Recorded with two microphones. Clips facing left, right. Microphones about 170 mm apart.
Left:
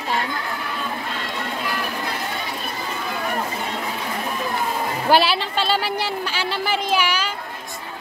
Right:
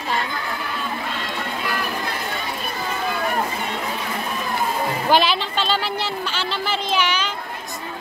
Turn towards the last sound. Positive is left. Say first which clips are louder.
# left 1 dB
turn(degrees=10)  # may be behind; listen again after turning